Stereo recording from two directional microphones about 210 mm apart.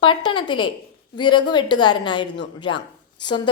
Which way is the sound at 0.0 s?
25° left (ahead or behind).